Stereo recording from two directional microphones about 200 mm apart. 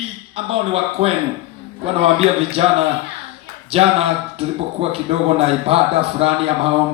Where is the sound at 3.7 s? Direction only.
30° right (ahead or behind).